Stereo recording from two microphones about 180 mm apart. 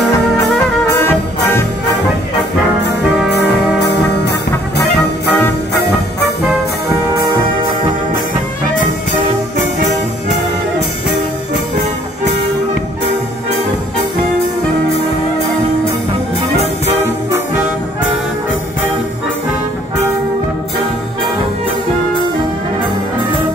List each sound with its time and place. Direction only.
0.9 s music: 10° left (ahead or behind)
3.3 s brass instrument: 70° left (ahead or behind)